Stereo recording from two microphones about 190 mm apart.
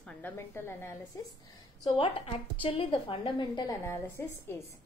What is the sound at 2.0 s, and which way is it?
A woman's voice, 30° left (ahead or behind).